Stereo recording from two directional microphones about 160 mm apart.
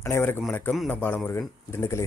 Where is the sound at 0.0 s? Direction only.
15° left (ahead or behind).